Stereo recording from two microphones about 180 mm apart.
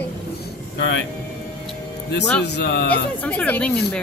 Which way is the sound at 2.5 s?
70° left (ahead or behind).